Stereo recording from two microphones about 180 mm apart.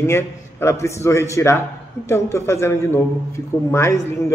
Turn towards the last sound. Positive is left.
turn(degrees=15)  # may be behind; listen again after turning